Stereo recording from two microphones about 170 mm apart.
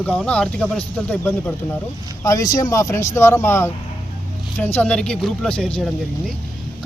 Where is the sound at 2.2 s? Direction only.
20° left (ahead or behind).